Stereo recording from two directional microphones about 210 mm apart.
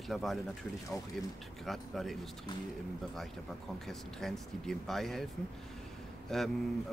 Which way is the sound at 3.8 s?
Centre (ahead or behind).